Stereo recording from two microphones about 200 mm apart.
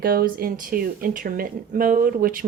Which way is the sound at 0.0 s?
45° right (ahead or behind).